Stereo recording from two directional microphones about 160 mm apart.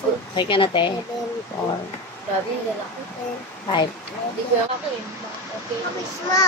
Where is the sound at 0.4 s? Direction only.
30° left (ahead or behind).